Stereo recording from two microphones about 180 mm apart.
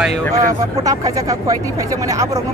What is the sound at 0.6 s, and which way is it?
Speech, 20° right (ahead or behind).